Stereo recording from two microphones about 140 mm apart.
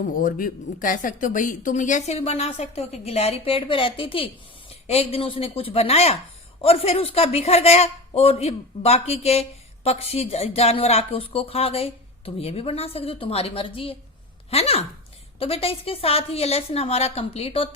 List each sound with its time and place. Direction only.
0.2 s speech: 90° left; by 17.7 s 40° left (ahead or behind)